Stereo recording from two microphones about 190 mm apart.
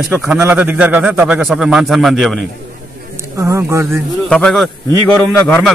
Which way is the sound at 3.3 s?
15° right (ahead or behind).